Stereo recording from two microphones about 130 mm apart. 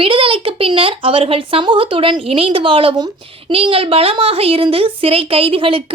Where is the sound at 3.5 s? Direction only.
45° right (ahead or behind).